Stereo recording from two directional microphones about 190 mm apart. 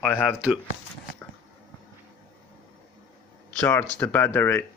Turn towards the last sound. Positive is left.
turn(degrees=10)  # may be behind; listen again after turning